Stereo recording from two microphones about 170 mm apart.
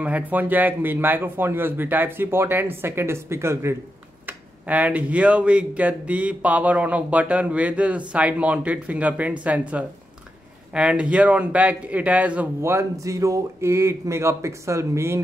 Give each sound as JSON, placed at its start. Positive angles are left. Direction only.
{"t": 0.0, "sound": "speech", "side_deg": -10}